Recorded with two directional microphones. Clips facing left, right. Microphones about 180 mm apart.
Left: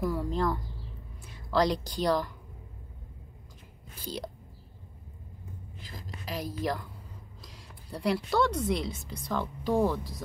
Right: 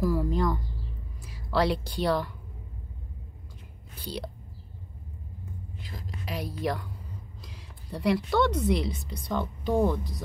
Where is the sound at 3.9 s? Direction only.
45° left (ahead or behind).